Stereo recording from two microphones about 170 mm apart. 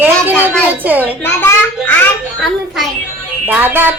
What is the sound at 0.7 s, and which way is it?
Speech, 10° right (ahead or behind).